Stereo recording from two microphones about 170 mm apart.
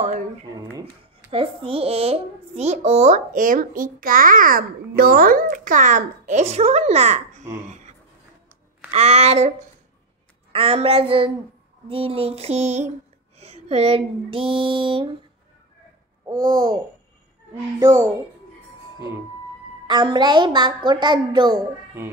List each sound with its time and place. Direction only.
1.3 s a child's voice: 35° right (ahead or behind)
8.9 s a sound: 40° right (ahead or behind)
10.5 s a sound: 35° right (ahead or behind)
13.4 s speech: 40° right (ahead or behind)
16.3 s a woman's voice: 25° right (ahead or behind)
19.9 s a woman's voice: 25° right (ahead or behind)
22.0 s music: 15° right (ahead or behind)